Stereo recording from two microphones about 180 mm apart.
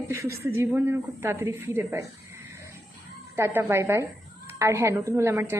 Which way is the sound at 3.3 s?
15° right (ahead or behind).